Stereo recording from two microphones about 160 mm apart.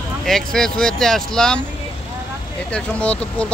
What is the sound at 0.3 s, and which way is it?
Speech, 5° left (ahead or behind).